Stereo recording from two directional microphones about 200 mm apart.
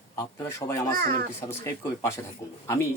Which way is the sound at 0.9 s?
45° right (ahead or behind).